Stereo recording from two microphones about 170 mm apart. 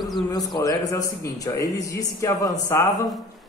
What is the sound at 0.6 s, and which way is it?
A man's voice, 20° left (ahead or behind).